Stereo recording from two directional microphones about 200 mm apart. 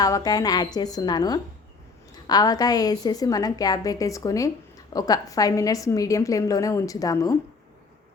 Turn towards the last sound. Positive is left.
turn(degrees=15)  # may be behind; listen again after turning